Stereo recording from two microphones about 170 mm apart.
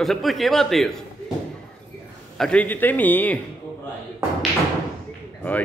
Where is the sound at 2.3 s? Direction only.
5° left (ahead or behind).